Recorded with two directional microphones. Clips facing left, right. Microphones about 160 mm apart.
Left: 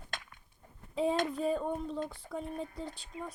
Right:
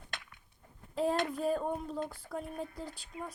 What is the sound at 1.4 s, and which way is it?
Speech, 5° right (ahead or behind).